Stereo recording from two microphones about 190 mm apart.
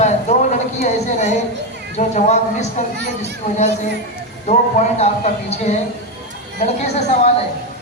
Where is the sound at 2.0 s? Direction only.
40° left (ahead or behind).